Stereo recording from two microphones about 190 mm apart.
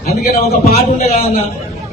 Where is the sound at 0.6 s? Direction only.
35° left (ahead or behind).